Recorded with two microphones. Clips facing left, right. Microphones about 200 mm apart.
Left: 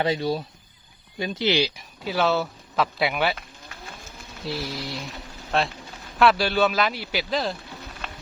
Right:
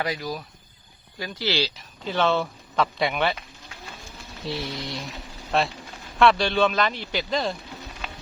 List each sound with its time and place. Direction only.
0.0 s speech: 25° left (ahead or behind); by 3.3 s 5° left (ahead or behind)
4.4 s speech: centre (ahead or behind)